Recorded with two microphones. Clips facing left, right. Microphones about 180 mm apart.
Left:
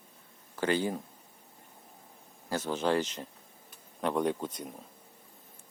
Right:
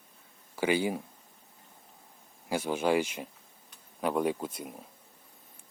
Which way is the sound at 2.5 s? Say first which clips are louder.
Right 2 dB; 10° right (ahead or behind).